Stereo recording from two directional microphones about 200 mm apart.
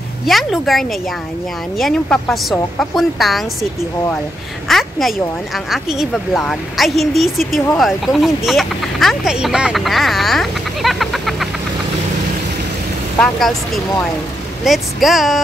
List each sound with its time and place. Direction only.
0.3 s a woman's voice: centre (ahead or behind)
4.6 s a woman's voice: centre (ahead or behind)
13.2 s a woman's voice: centre (ahead or behind)
14.6 s a woman's voice: centre (ahead or behind)